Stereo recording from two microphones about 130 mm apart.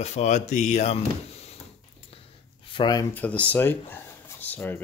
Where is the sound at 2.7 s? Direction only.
30° left (ahead or behind).